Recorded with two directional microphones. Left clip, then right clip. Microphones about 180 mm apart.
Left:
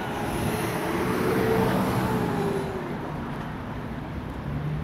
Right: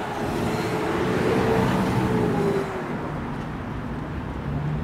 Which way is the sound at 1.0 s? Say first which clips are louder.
Right 2 dB; 50° left (ahead or behind).